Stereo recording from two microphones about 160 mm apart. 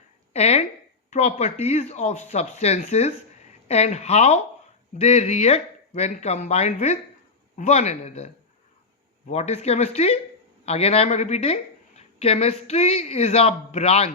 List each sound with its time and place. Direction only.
0.3 s speech: 40° left (ahead or behind)
9.3 s speech: 40° left (ahead or behind)